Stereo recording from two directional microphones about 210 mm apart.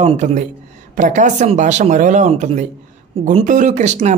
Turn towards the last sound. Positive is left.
turn(degrees=-35)  # may be behind; listen again after turning